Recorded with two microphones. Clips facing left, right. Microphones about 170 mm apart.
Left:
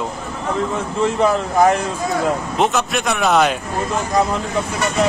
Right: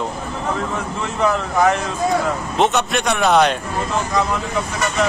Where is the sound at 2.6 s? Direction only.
Centre (ahead or behind).